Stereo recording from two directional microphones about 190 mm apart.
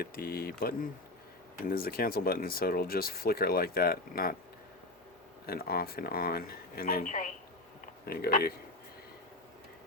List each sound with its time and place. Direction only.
0.0 s speech: 50° left (ahead or behind)
5.5 s speech: 55° left (ahead or behind)